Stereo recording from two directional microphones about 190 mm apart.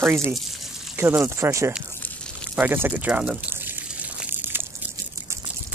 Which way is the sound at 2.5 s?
10° right (ahead or behind).